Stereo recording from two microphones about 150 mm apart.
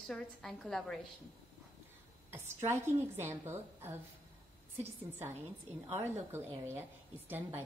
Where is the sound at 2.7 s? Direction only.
15° right (ahead or behind).